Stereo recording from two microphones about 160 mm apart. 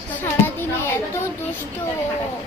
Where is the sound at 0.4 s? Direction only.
15° left (ahead or behind).